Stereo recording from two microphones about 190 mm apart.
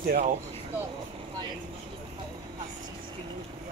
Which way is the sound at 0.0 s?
45° right (ahead or behind).